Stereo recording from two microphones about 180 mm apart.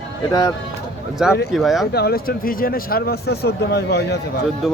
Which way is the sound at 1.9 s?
60° left (ahead or behind).